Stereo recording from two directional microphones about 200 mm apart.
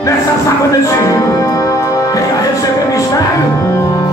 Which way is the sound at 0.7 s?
15° left (ahead or behind).